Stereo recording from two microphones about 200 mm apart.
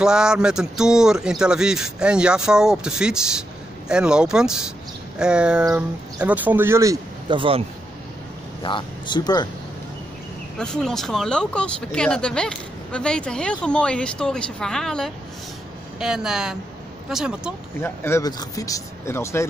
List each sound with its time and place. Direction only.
0.0 s speech: 5° right (ahead or behind); by 7.6 s 25° right (ahead or behind)
8.6 s speech: 25° left (ahead or behind)
10.6 s speech: 5° left (ahead or behind)
17.7 s speech: 10° left (ahead or behind)